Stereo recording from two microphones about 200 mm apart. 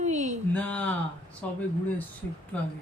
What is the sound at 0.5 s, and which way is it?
Speech, 5° left (ahead or behind).